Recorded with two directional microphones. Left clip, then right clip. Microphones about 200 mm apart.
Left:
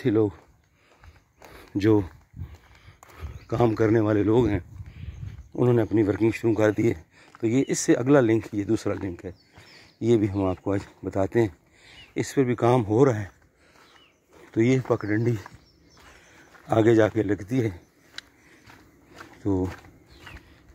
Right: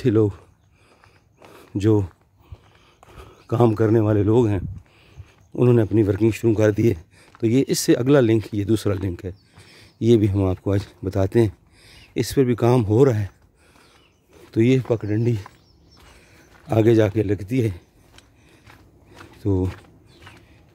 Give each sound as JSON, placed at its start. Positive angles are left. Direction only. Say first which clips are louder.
{"t": 0.0, "sound": "speech", "louder": "right 4 dB", "side_deg": -35}
{"t": 1.5, "sound": "a sound", "louder": "right 1 dB", "side_deg": -20}
{"t": 3.2, "sound": "speech", "louder": "right 4 dB", "side_deg": -30}
{"t": 10.0, "sound": "speech", "louder": "right 4 dB", "side_deg": -50}
{"t": 14.5, "sound": "speech", "louder": "right 3 dB", "side_deg": -25}
{"t": 16.6, "sound": "speech", "louder": "right 2 dB", "side_deg": -35}
{"t": 17.1, "sound": "speech", "louder": "right 3 dB", "side_deg": -25}
{"t": 19.4, "sound": "speech", "louder": "right 3 dB", "side_deg": -40}